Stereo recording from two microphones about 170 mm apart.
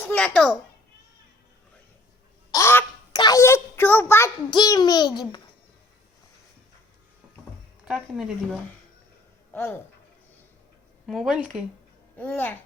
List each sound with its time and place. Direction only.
0.0 s a child's voice: 5° left (ahead or behind)
2.5 s a sound: 15° left (ahead or behind)
4.5 s a child's voice: 25° left (ahead or behind)
7.9 s speech: 5° right (ahead or behind)
9.5 s speech: 15° left (ahead or behind)
11.0 s speech: centre (ahead or behind)
12.1 s a child's voice: 10° left (ahead or behind)